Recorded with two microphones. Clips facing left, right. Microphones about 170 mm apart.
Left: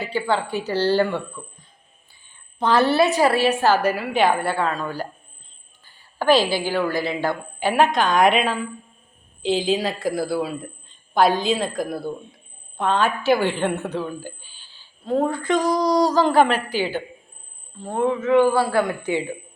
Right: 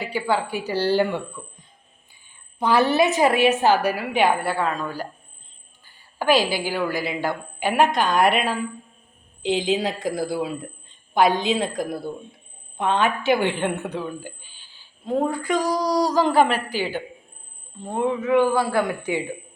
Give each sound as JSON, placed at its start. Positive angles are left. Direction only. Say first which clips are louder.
{"t": 0.0, "sound": "a woman's voice", "louder": "left 1 dB", "side_deg": -10}
{"t": 2.6, "sound": "a woman's voice", "louder": "left 1 dB", "side_deg": -10}
{"t": 5.8, "sound": "a woman's voice", "louder": "left 2 dB", "side_deg": -10}
{"t": 15.0, "sound": "a woman's voice", "louder": "left 2 dB", "side_deg": -15}